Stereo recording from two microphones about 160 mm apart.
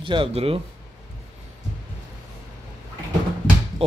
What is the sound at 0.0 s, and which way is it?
Speech, 35° right (ahead or behind).